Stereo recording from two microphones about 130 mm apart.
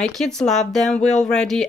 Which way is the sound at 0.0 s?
5° left (ahead or behind).